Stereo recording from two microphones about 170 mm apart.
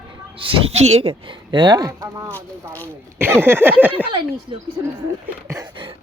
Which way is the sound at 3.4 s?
15° right (ahead or behind).